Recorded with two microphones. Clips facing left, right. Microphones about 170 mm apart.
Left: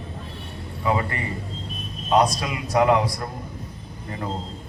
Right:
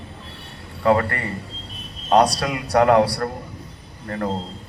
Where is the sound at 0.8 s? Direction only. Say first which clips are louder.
Right 6 dB; 65° right (ahead or behind).